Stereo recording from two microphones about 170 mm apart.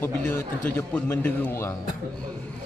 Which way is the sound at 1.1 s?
10° left (ahead or behind).